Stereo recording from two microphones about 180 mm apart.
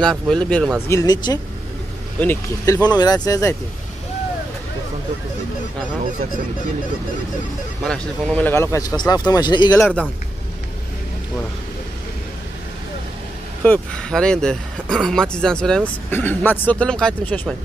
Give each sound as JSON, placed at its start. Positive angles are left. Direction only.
{"t": 0.0, "sound": "speech", "side_deg": 5}
{"t": 0.8, "sound": "a man's voice", "side_deg": 20}
{"t": 7.8, "sound": "a man's voice", "side_deg": 5}
{"t": 13.7, "sound": "speech", "side_deg": 5}